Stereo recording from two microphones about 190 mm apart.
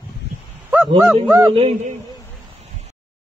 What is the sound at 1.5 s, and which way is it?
Speech, 30° right (ahead or behind).